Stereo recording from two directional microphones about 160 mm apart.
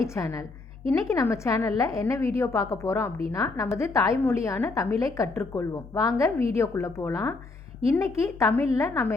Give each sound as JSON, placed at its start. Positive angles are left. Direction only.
{"t": 0.0, "sound": "a woman's voice", "side_deg": 20}